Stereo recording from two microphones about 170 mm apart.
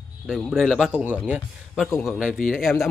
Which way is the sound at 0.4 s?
Centre (ahead or behind).